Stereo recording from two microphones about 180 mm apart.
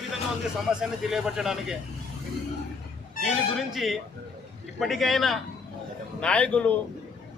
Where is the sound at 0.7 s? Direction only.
5° right (ahead or behind).